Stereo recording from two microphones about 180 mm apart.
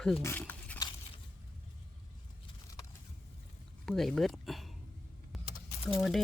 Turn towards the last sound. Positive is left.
turn(degrees=0)  # may be behind; listen again after turning